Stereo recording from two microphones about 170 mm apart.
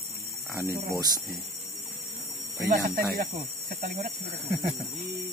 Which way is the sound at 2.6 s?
60° right (ahead or behind).